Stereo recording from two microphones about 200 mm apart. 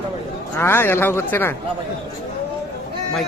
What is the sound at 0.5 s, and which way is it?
Speech, 10° left (ahead or behind).